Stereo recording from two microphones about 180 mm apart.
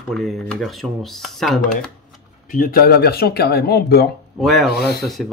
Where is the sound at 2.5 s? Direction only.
55° left (ahead or behind).